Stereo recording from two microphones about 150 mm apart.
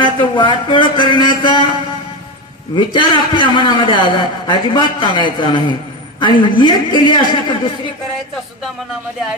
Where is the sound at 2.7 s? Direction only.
35° left (ahead or behind).